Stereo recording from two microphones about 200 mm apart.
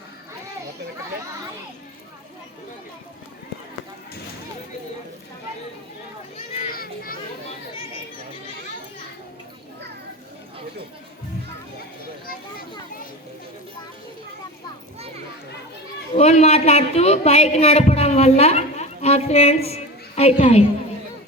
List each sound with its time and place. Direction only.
6.7 s children playing: 45° left (ahead or behind)
12.2 s a sound: 45° left (ahead or behind)
16.1 s a woman's voice: 35° left (ahead or behind)